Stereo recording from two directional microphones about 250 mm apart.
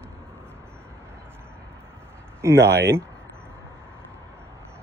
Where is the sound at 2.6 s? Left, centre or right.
Right.